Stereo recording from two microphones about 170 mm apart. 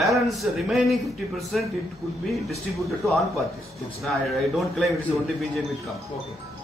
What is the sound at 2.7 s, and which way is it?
A man's voice, centre (ahead or behind).